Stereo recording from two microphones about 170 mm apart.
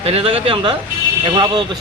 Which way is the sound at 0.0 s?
35° right (ahead or behind).